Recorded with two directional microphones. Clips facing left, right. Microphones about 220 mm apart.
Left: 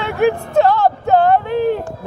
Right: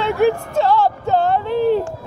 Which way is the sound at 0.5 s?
55° left (ahead or behind).